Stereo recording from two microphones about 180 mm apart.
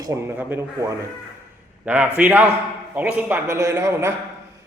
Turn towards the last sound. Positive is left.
turn(degrees=-15)  # may be behind; listen again after turning